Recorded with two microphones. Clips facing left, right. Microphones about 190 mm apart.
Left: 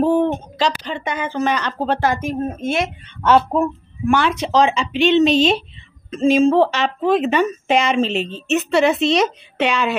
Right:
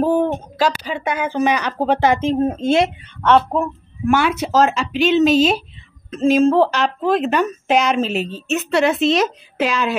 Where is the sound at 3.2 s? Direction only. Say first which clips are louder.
Even; 5° left (ahead or behind).